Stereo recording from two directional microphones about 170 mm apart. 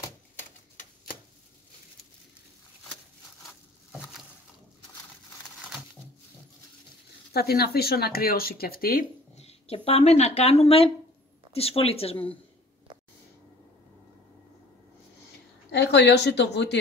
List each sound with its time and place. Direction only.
7.3 s speech: 65° left (ahead or behind)
9.4 s a woman's voice: 35° left (ahead or behind)
15.7 s speech: 90° left